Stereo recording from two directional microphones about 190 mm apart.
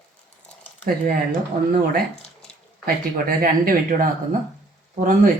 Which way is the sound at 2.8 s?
50° right (ahead or behind).